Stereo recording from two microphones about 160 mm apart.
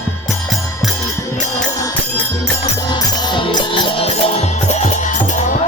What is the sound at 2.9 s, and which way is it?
Music, 25° left (ahead or behind).